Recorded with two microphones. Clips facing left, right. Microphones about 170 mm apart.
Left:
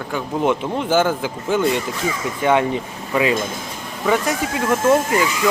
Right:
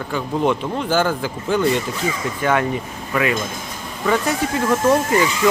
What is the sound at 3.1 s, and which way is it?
Speech, 25° left (ahead or behind).